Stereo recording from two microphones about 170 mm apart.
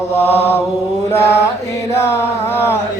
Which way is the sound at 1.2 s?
15° left (ahead or behind).